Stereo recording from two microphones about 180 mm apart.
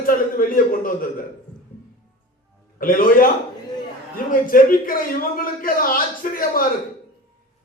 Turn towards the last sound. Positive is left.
turn(degrees=50)  # may be behind; listen again after turning